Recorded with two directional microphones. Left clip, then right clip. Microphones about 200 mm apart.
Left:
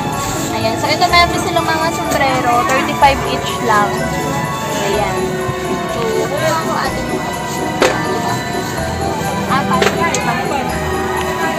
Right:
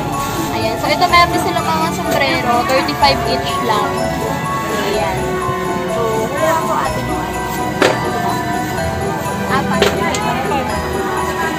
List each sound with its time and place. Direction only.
0.8 s a woman's voice: centre (ahead or behind)
2.7 s speech: 20° left (ahead or behind)